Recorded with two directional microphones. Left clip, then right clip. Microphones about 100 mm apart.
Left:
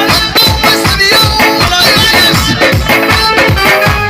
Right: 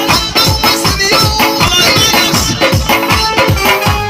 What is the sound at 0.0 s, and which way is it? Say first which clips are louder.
Music: left 3 dB; 20° right (ahead or behind).